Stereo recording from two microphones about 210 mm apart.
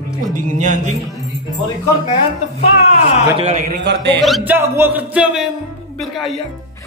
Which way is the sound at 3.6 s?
50° right (ahead or behind).